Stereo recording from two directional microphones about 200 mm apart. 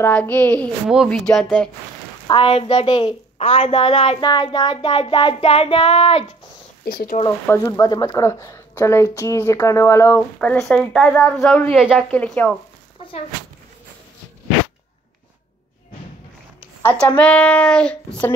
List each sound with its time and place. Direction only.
0.0 s speech: 10° left (ahead or behind)
2.2 s a woman's voice: 25° left (ahead or behind)
6.9 s speech: 50° left (ahead or behind)
7.4 s speech: 15° left (ahead or behind)
16.8 s speech: 10° left (ahead or behind)